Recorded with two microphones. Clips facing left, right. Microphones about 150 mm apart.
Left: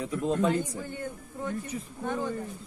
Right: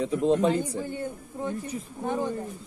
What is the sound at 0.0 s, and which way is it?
Speech, 25° right (ahead or behind).